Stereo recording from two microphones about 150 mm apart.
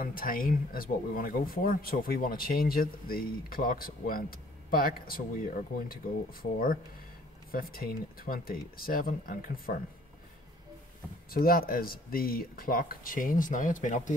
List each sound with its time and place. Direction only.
0.0 s speech: 75° left (ahead or behind)
7.5 s speech: 80° left
11.2 s speech: 75° left (ahead or behind); by 14.1 s 55° left (ahead or behind)